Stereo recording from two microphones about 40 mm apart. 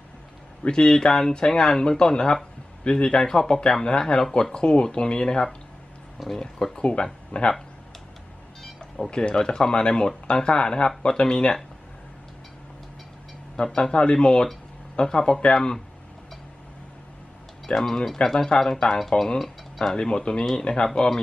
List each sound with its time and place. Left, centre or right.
0.7 s speech: centre
7.3 s speech: left
9.1 s speech: left
13.6 s speech: left
17.8 s speech: centre